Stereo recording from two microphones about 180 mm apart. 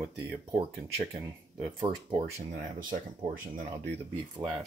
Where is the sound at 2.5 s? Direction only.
50° right (ahead or behind).